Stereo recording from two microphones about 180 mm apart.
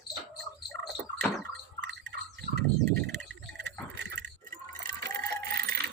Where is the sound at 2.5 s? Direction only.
65° right (ahead or behind).